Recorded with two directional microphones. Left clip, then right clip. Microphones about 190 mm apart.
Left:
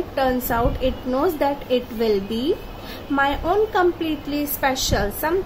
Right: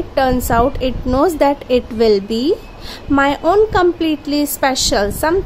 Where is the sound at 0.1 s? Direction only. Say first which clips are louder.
Right 7 dB; 50° right (ahead or behind).